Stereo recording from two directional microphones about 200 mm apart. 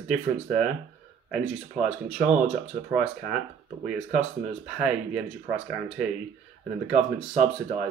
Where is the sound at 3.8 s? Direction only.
5° right (ahead or behind).